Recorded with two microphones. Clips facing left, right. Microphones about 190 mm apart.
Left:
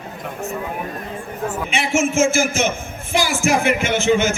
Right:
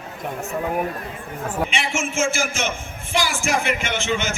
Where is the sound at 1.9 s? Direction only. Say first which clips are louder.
Left 6 dB; 45° left (ahead or behind).